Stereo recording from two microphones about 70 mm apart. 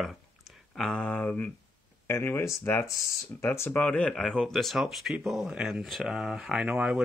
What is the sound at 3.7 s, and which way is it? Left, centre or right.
Speech, left.